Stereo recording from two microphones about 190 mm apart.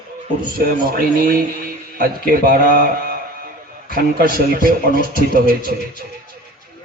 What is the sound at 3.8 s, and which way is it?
A man's voice, 50° right (ahead or behind).